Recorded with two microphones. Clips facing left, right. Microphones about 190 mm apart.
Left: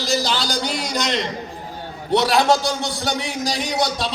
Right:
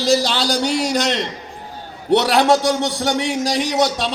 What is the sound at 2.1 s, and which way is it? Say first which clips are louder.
A man's voice: right 3 dB; 75° right (ahead or behind).